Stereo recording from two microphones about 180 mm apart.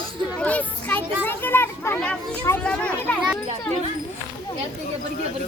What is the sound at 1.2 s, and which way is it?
A child's voice, 10° left (ahead or behind).